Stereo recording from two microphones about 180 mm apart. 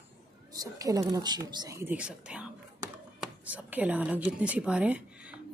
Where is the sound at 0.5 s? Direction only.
20° right (ahead or behind).